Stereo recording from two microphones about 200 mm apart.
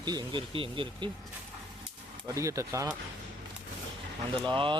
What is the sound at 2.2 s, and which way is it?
Speech, 15° right (ahead or behind).